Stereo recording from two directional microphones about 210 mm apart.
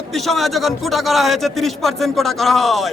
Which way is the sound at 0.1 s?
Centre (ahead or behind).